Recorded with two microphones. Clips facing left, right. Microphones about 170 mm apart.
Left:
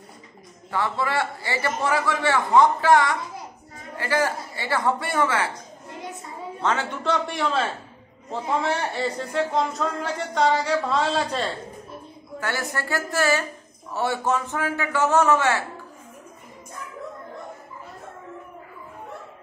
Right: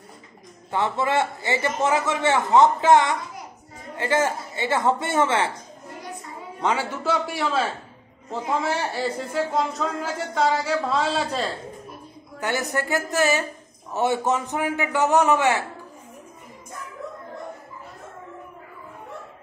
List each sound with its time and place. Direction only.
0.7 s a man's voice: 20° right (ahead or behind)
6.6 s speech: 10° right (ahead or behind)
12.4 s a man's voice: 20° right (ahead or behind)